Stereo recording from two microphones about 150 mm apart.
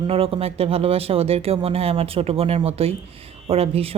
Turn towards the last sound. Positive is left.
turn(degrees=-40)  # may be behind; listen again after turning